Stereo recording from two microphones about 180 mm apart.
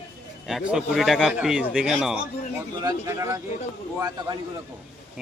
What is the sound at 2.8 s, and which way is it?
Speech, 15° right (ahead or behind).